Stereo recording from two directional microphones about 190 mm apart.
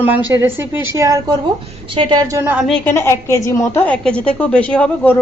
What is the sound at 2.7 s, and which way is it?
A woman's voice, 10° left (ahead or behind).